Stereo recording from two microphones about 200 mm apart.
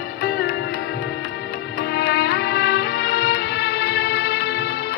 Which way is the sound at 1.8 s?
55° left (ahead or behind).